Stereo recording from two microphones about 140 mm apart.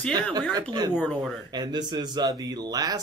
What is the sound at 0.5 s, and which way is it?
Speech, 30° right (ahead or behind).